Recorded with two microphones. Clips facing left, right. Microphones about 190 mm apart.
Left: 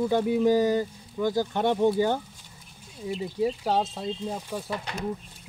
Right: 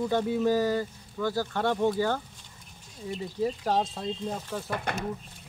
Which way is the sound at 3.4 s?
5° left (ahead or behind).